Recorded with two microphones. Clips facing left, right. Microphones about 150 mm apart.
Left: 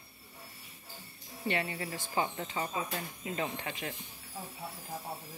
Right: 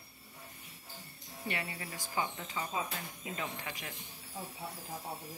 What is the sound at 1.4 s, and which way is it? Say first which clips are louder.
A woman's voice: left 6 dB; 30° left (ahead or behind).